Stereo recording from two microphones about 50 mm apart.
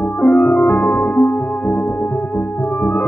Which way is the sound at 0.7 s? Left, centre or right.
Left.